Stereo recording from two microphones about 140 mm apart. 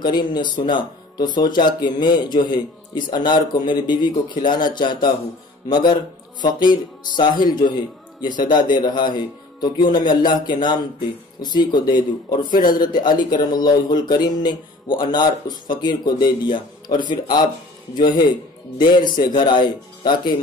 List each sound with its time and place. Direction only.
0.0 s speech: 30° left (ahead or behind)
8.7 s speech: 30° left (ahead or behind)